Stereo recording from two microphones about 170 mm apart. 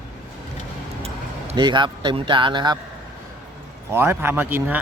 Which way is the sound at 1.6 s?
25° right (ahead or behind).